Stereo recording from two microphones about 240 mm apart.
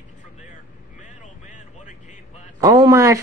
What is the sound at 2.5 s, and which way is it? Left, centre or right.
Speech, centre.